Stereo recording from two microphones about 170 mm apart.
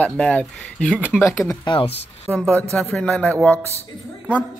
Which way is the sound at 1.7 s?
30° left (ahead or behind).